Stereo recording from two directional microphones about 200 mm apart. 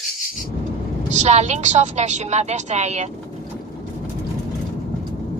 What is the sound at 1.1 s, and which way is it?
A woman's voice, 35° right (ahead or behind).